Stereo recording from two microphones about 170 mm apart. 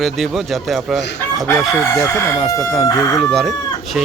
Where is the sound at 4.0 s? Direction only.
5° right (ahead or behind).